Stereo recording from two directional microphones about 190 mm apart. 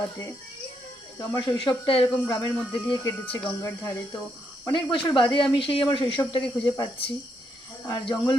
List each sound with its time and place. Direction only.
0.0 s speech: 15° left (ahead or behind)